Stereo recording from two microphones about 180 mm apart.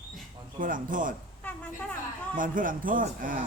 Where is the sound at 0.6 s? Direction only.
50° right (ahead or behind).